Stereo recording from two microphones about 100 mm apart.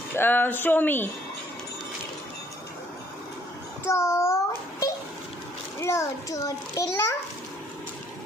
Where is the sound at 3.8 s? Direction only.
25° left (ahead or behind).